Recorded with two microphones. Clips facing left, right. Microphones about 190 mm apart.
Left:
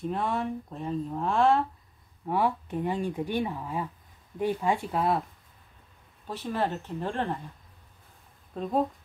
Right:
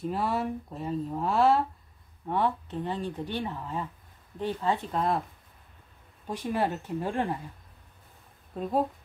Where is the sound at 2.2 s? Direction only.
10° left (ahead or behind).